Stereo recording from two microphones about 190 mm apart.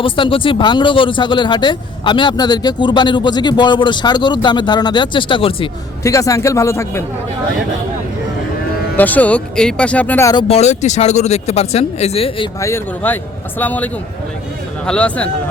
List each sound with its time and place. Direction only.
0.0 s speech: 25° left (ahead or behind)
6.0 s speech: 15° left (ahead or behind)
9.0 s speech: 10° left (ahead or behind)
10.5 s speech: 35° left (ahead or behind)
12.5 s speech: 15° left (ahead or behind)